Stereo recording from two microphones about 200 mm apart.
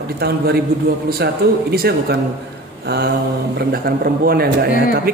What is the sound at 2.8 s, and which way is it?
Mantra, 55° right (ahead or behind).